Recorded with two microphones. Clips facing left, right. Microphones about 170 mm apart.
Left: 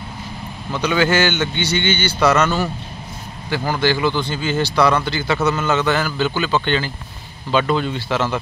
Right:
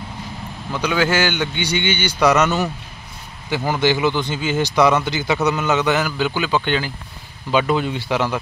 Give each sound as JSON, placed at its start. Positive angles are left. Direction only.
{"t": 0.7, "sound": "speech", "side_deg": -5}